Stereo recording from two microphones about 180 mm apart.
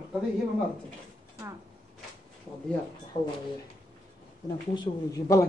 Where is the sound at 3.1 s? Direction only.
40° left (ahead or behind).